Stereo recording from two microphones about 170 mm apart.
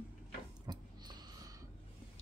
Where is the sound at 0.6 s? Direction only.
25° right (ahead or behind).